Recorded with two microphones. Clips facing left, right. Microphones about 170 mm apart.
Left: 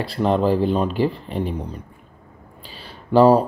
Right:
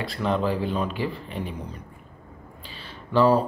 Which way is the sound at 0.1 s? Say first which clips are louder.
Left 7 dB; 35° left (ahead or behind).